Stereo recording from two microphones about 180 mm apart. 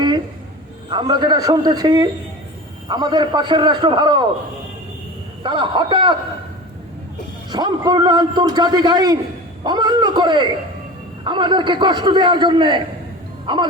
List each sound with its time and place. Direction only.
0.9 s a man's voice: 25° right (ahead or behind)
5.4 s a man's voice: 25° right (ahead or behind)
7.5 s a man's voice: 25° right (ahead or behind)